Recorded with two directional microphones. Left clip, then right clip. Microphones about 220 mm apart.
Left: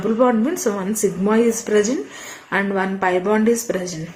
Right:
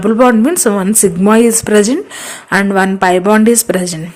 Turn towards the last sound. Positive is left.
turn(degrees=-45)  # may be behind; listen again after turning